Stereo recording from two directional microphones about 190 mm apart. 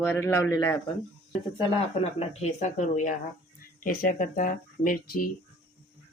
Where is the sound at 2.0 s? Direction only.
35° left (ahead or behind).